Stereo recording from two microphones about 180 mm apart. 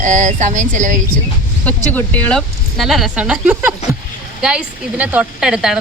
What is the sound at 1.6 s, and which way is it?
A woman's voice, 10° left (ahead or behind).